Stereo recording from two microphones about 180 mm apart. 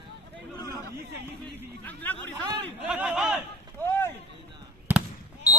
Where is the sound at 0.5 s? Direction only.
20° left (ahead or behind).